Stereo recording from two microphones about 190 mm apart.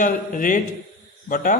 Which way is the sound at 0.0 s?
45° left (ahead or behind).